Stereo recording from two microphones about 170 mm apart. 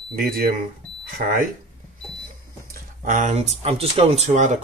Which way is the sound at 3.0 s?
50° right (ahead or behind).